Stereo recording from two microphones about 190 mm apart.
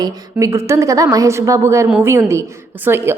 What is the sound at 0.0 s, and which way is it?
A woman's voice, 15° right (ahead or behind).